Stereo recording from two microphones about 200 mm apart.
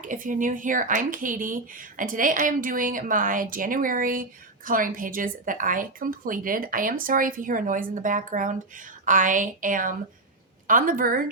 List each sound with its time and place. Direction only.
0.0 s a woman's voice: 40° right (ahead or behind)